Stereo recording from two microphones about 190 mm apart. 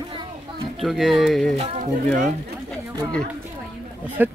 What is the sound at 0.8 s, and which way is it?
Speech, centre (ahead or behind).